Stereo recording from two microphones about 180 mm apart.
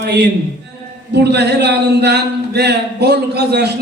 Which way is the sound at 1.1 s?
70° right (ahead or behind).